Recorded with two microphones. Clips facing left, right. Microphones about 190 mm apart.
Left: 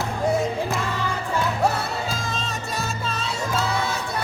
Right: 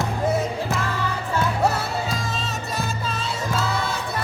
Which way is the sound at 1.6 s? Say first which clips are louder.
Right 1 dB; centre (ahead or behind).